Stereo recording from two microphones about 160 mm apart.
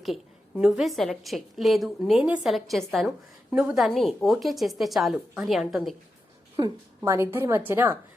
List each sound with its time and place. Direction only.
0.0 s a woman's voice: centre (ahead or behind)
6.6 s a woman's voice: 15° right (ahead or behind)